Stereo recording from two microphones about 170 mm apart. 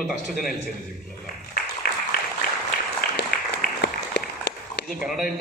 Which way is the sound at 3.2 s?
75° left (ahead or behind).